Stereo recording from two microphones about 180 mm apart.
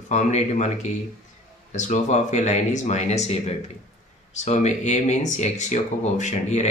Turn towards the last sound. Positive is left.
turn(degrees=40)  # may be behind; listen again after turning